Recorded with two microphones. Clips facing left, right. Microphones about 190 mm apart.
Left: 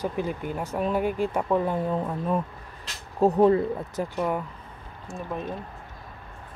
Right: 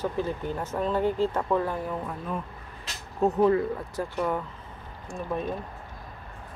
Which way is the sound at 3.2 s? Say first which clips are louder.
Left 3 dB; 35° left (ahead or behind).